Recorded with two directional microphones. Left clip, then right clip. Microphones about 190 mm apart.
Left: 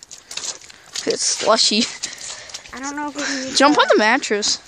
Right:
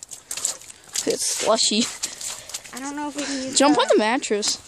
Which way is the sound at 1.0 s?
5° right (ahead or behind).